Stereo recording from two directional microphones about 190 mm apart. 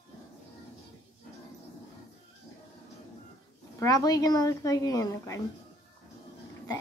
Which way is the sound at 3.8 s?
20° left (ahead or behind).